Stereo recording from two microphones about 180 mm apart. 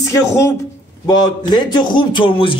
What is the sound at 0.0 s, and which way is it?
Speech, 15° left (ahead or behind).